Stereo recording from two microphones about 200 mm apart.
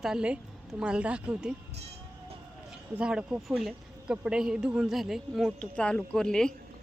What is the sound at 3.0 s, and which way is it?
Speech, 5° right (ahead or behind).